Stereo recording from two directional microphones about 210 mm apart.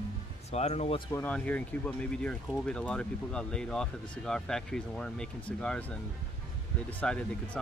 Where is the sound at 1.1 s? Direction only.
5° left (ahead or behind).